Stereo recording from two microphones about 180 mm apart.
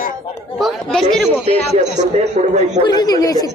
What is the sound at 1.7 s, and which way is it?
A man's voice, 40° right (ahead or behind).